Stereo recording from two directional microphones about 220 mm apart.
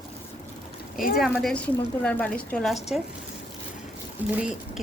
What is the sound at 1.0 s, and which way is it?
Speech, 40° left (ahead or behind).